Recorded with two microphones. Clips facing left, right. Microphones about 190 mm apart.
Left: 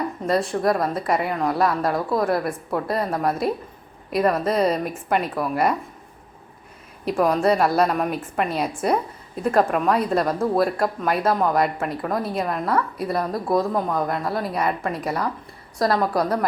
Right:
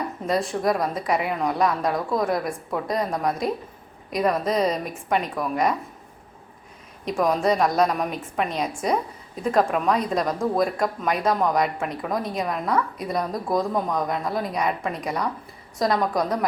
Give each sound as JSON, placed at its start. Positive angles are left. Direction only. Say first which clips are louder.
{"t": 0.3, "sound": "a woman's voice", "louder": "left 2 dB", "side_deg": 0}
{"t": 7.0, "sound": "a woman's voice", "louder": "left 2 dB", "side_deg": 5}